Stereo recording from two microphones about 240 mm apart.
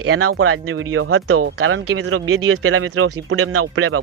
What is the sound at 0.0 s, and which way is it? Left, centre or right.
Speech, right.